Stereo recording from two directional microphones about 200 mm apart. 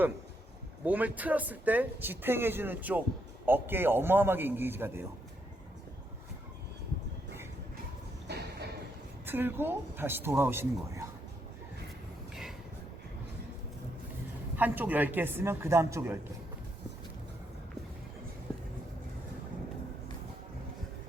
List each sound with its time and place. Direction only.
0.9 s speech: 10° right (ahead or behind)
8.3 s a sound: 55° right (ahead or behind)
9.2 s speech: 10° right (ahead or behind)
14.5 s speech: 10° right (ahead or behind)